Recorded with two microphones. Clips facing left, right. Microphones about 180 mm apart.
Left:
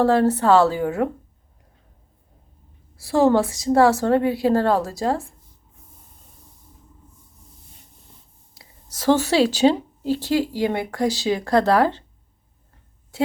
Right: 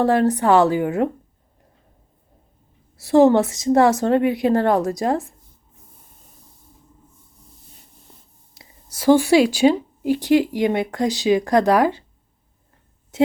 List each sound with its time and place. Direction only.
0.0 s speech: 20° right (ahead or behind)
3.0 s a woman's voice: 20° right (ahead or behind)
8.9 s speech: 10° right (ahead or behind)
13.1 s speech: 20° right (ahead or behind)